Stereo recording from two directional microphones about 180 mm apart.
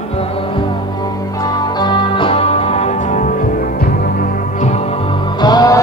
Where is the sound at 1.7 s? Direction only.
25° left (ahead or behind).